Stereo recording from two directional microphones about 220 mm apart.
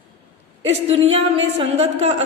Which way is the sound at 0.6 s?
25° right (ahead or behind).